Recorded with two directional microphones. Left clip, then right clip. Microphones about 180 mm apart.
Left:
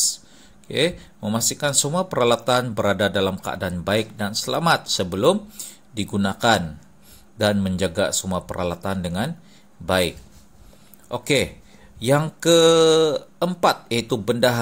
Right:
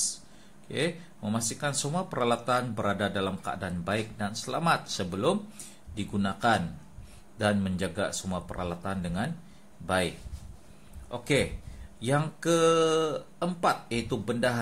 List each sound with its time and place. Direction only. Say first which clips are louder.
0.7 s speech: left 9 dB; 35° left (ahead or behind)
11.1 s speech: left 7 dB; 40° left (ahead or behind)